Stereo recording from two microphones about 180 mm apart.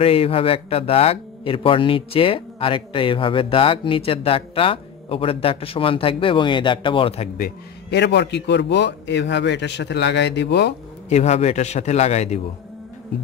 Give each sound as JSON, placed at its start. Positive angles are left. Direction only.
{"t": 0.0, "sound": "speech", "side_deg": 30}
{"t": 7.3, "sound": "a man's voice", "side_deg": 60}
{"t": 11.1, "sound": "speech", "side_deg": 40}